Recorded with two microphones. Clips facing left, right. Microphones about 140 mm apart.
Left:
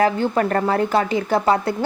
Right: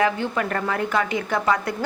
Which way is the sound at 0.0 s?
35° left (ahead or behind).